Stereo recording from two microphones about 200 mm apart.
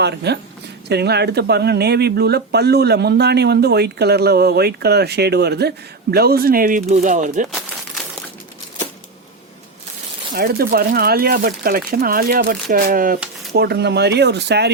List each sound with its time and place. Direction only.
0.0 s speech: 55° right (ahead or behind); by 7.4 s 40° right (ahead or behind)
10.3 s speech: 50° right (ahead or behind)
13.5 s speech: 55° right (ahead or behind)